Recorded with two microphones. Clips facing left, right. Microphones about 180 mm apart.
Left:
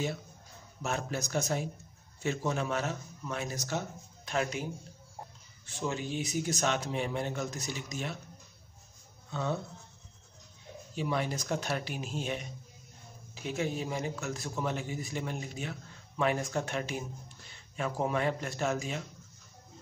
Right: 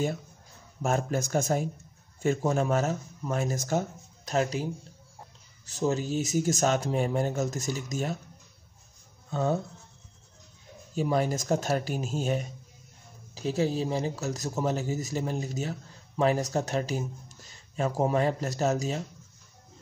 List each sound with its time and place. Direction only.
0.8 s speech: 50° right (ahead or behind)
4.3 s a man's voice: 35° right (ahead or behind)
5.7 s speech: 40° right (ahead or behind)
9.3 s speech: 45° right (ahead or behind)
11.0 s a man's voice: 40° right (ahead or behind)